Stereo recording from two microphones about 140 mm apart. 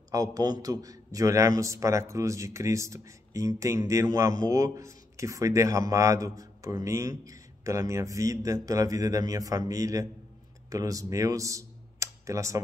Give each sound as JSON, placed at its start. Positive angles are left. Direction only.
{"t": 0.1, "sound": "a man's voice", "side_deg": -25}